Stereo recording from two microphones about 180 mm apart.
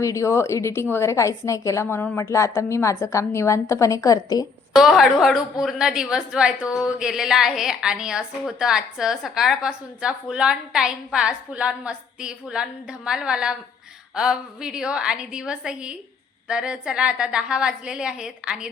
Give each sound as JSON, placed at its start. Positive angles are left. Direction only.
{"t": 0.0, "sound": "a woman's voice", "side_deg": 15}
{"t": 4.8, "sound": "a woman's voice", "side_deg": 0}